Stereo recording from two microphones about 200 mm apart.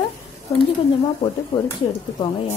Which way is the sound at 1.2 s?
15° left (ahead or behind).